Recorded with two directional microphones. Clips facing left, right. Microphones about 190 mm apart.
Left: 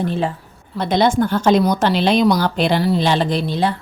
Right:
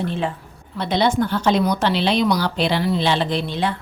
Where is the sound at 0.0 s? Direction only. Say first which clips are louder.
Left 3 dB; 40° left (ahead or behind).